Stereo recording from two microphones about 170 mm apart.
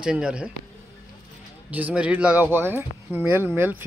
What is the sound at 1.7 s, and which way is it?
Speech, 10° right (ahead or behind).